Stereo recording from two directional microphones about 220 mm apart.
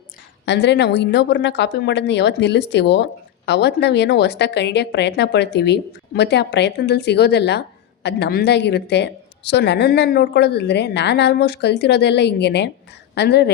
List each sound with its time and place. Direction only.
0.4 s speech: 50° left (ahead or behind)